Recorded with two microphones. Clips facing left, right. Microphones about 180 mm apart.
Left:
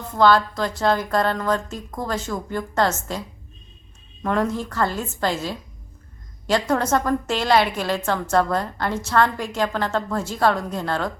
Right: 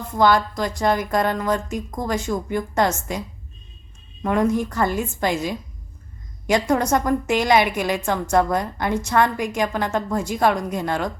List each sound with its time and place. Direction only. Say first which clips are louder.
0.1 s a woman's voice: left 1 dB; 15° right (ahead or behind)
4.2 s a woman's voice: right 3 dB; 10° right (ahead or behind)